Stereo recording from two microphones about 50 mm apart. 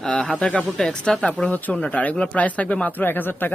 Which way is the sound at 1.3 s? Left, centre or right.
Left.